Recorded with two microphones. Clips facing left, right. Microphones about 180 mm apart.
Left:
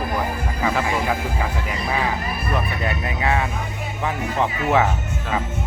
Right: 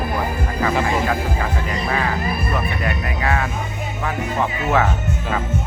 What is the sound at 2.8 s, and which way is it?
Speech, 20° left (ahead or behind).